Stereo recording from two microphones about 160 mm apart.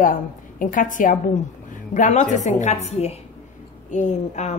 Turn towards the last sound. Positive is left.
turn(degrees=45)  # may be behind; listen again after turning